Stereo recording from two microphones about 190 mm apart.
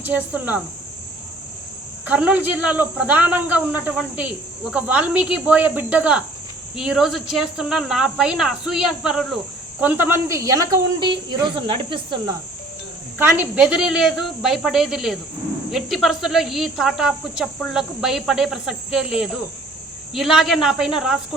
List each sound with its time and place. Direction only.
0.0 s speech: 10° right (ahead or behind)
2.0 s speech: 10° right (ahead or behind); by 12.2 s 30° right (ahead or behind)
13.1 s speech: 10° right (ahead or behind)